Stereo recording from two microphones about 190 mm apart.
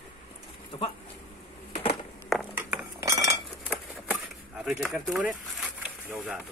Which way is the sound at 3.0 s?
15° right (ahead or behind).